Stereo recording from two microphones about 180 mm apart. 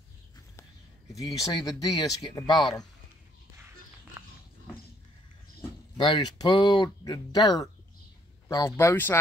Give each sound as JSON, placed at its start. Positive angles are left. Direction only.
{"t": 1.1, "sound": "speech", "side_deg": 20}
{"t": 4.2, "sound": "dog", "side_deg": -15}
{"t": 5.9, "sound": "speech", "side_deg": 25}